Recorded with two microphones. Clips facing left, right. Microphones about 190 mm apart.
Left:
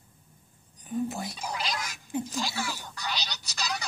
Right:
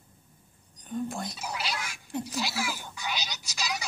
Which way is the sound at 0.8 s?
5° left (ahead or behind).